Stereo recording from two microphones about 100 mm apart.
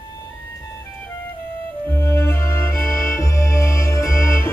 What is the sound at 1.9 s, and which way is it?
Music, 30° left (ahead or behind).